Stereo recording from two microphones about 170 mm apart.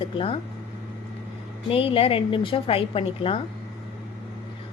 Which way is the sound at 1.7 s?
35° left (ahead or behind).